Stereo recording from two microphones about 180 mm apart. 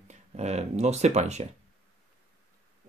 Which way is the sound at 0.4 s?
35° right (ahead or behind).